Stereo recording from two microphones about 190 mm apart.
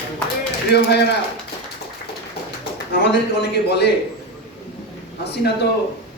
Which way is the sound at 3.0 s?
60° left (ahead or behind).